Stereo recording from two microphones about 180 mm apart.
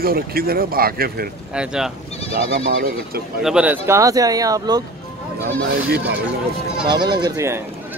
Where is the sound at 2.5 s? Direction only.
90° right.